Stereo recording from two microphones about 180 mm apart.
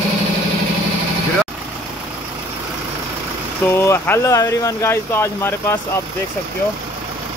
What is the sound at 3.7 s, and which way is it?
Speech, 15° left (ahead or behind).